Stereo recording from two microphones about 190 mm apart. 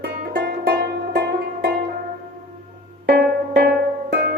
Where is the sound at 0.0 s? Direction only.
50° right (ahead or behind).